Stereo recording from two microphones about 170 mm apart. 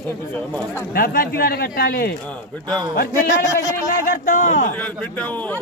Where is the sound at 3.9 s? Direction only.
50° left (ahead or behind).